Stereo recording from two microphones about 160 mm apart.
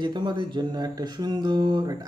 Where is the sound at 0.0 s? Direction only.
30° right (ahead or behind).